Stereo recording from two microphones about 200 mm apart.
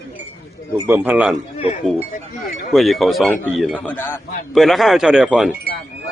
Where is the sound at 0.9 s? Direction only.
10° right (ahead or behind).